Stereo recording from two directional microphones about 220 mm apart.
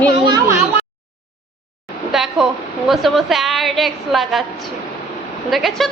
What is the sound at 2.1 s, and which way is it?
A woman's voice, centre (ahead or behind).